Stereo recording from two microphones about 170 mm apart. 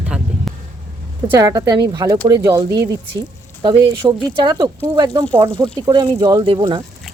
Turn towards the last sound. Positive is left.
turn(degrees=-30)  # may be behind; listen again after turning